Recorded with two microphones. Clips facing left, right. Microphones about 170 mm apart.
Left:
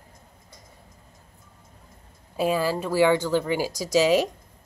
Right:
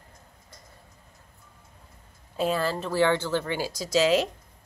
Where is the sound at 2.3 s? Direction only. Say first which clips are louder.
Left 3 dB; 10° left (ahead or behind).